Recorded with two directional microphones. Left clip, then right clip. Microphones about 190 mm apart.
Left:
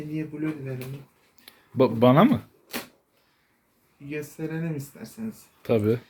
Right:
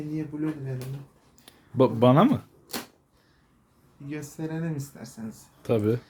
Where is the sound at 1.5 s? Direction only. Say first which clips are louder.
Even; 15° right (ahead or behind).